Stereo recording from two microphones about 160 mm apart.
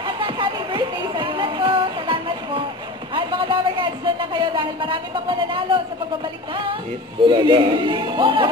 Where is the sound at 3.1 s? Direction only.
30° right (ahead or behind).